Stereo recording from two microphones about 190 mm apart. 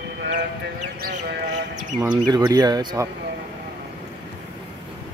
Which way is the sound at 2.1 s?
20° right (ahead or behind).